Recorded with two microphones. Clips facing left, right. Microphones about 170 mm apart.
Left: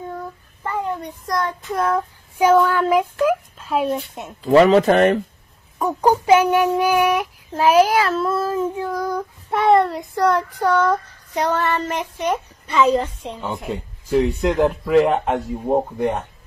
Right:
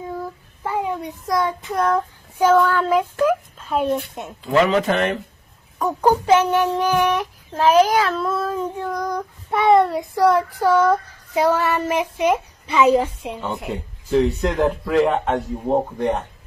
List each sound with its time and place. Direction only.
0.7 s child singing: 5° right (ahead or behind)
4.4 s speech: 35° left (ahead or behind)
5.8 s child singing: 10° left (ahead or behind)
15.3 s speech: 10° left (ahead or behind)